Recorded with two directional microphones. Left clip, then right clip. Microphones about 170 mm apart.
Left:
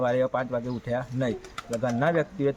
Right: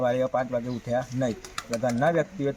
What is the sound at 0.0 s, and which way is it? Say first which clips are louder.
Speech: even; 5° left (ahead or behind).